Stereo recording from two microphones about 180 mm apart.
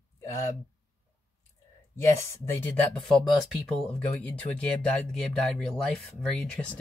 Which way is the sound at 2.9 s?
5° left (ahead or behind).